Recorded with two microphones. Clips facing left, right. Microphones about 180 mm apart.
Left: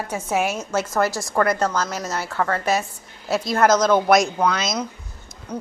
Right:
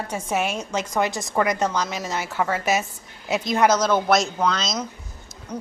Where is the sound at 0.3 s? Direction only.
10° left (ahead or behind).